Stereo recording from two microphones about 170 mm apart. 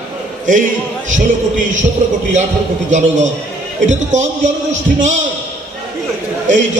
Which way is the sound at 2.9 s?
45° right (ahead or behind).